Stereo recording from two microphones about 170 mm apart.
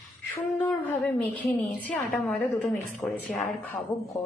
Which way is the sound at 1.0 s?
10° left (ahead or behind).